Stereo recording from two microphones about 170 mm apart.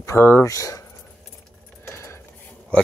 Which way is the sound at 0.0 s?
15° left (ahead or behind).